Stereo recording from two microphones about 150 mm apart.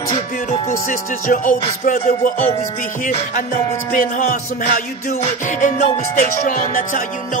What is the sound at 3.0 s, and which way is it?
Music, 60° left (ahead or behind).